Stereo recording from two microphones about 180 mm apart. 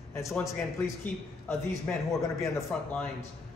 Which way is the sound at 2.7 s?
5° left (ahead or behind).